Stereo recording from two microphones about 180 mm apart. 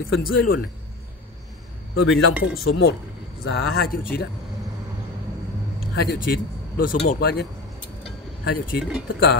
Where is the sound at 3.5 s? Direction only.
60° left (ahead or behind).